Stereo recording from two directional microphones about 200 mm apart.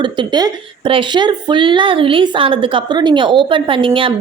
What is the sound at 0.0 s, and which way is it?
A woman's voice, 25° right (ahead or behind).